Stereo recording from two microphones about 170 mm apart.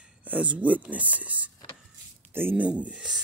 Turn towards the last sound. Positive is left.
turn(degrees=-5)  # may be behind; listen again after turning